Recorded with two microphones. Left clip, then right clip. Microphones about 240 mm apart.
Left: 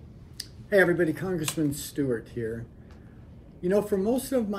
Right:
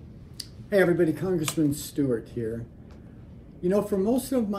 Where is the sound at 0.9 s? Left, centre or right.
Centre.